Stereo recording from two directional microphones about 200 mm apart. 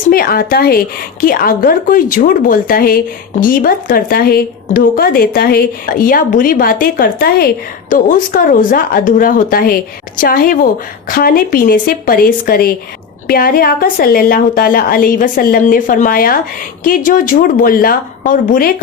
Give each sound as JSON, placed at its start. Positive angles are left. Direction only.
{"t": 0.1, "sound": "a woman's voice", "side_deg": 50}